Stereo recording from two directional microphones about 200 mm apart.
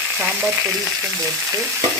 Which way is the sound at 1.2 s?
15° right (ahead or behind).